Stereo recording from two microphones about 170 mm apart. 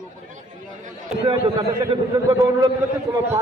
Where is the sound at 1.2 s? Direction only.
25° right (ahead or behind).